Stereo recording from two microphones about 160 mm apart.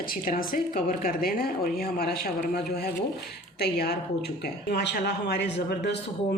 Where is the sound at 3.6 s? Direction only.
85° left.